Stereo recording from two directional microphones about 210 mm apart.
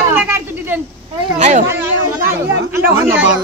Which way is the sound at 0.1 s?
10° right (ahead or behind).